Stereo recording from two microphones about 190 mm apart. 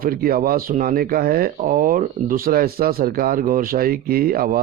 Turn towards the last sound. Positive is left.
turn(degrees=-50)  # may be behind; listen again after turning